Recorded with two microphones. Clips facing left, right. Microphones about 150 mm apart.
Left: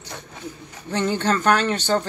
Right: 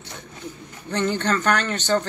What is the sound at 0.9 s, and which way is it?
Speech, 10° left (ahead or behind).